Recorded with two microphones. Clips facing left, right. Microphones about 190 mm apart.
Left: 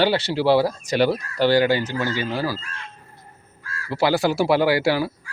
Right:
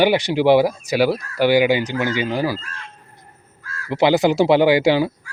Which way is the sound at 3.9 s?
20° right (ahead or behind).